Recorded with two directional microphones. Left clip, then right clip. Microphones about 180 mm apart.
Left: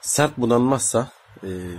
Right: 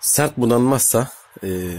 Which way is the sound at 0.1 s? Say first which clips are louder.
Right 1 dB; 40° right (ahead or behind).